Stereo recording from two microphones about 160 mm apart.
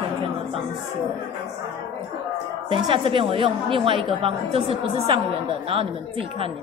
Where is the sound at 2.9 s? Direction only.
35° right (ahead or behind).